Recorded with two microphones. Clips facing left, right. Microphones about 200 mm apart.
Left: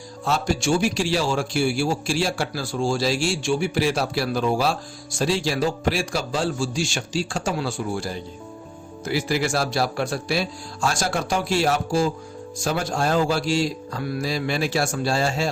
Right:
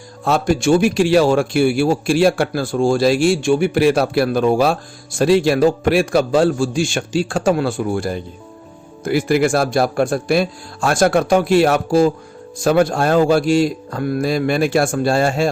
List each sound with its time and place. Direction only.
0.3 s speech: 55° right (ahead or behind)